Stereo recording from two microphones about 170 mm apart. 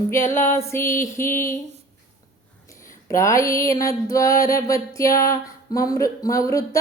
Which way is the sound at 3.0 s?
20° left (ahead or behind).